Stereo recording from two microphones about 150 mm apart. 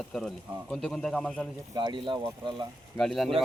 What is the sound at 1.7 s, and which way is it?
Speech, 30° right (ahead or behind).